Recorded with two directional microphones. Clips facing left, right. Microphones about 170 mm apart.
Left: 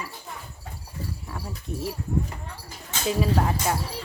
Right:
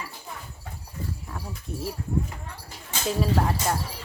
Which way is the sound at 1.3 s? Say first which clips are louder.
Left 2 dB; centre (ahead or behind).